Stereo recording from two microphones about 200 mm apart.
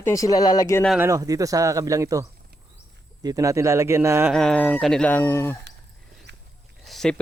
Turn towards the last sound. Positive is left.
turn(degrees=0)  # may be behind; listen again after turning